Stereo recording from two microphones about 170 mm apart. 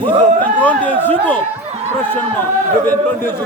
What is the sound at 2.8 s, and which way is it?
Speech, 10° left (ahead or behind).